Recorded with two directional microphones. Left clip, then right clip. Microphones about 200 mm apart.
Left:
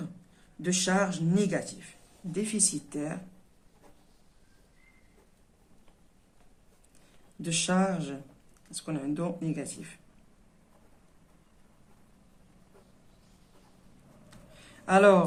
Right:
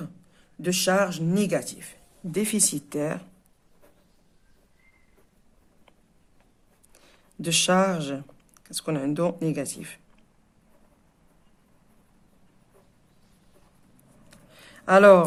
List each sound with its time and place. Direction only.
0.6 s speech: 40° right (ahead or behind)
7.4 s speech: 45° right (ahead or behind)
14.5 s a sound: 40° right (ahead or behind)